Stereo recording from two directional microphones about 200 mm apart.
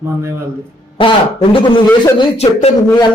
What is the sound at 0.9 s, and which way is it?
Speech, 25° left (ahead or behind).